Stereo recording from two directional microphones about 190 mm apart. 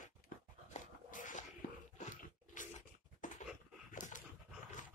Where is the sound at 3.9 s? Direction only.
45° left (ahead or behind).